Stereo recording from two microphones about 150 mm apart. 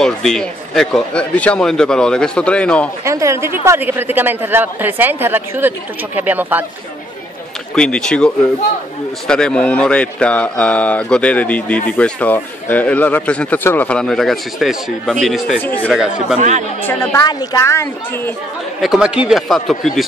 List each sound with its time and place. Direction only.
0.0 s speech: 5° left (ahead or behind)
3.1 s a man's voice: 20° right (ahead or behind)
7.7 s speech: 5° left (ahead or behind)
9.3 s speech: 5° left (ahead or behind)
15.6 s speech: 10° left (ahead or behind)
15.9 s speech: 5° right (ahead or behind)
16.3 s speech: 50° right (ahead or behind)
16.8 s speech: 15° left (ahead or behind)
17.2 s a woman's voice: 25° left (ahead or behind)
18.8 s speech: 5° right (ahead or behind)